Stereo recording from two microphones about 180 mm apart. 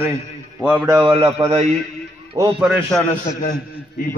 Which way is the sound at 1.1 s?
35° right (ahead or behind).